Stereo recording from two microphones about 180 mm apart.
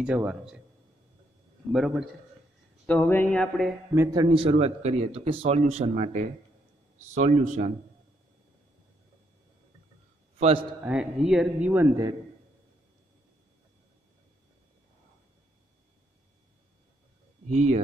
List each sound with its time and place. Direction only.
0.0 s speech: 5° right (ahead or behind)
1.7 s a man's voice: centre (ahead or behind)
2.9 s speech: 10° left (ahead or behind)
3.9 s speech: 15° right (ahead or behind)
4.2 s speech: 30° right (ahead or behind)
10.8 s speech: 5° right (ahead or behind)
17.5 s speech: 40° right (ahead or behind)